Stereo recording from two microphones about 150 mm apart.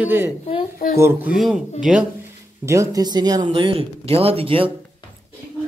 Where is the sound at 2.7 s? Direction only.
20° right (ahead or behind); by 4.7 s 35° right (ahead or behind).